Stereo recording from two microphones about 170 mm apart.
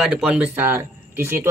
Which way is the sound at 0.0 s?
5° right (ahead or behind).